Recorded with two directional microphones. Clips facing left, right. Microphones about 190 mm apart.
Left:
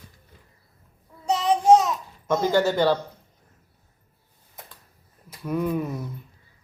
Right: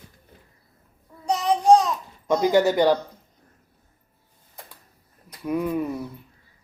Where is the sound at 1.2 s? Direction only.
5° left (ahead or behind).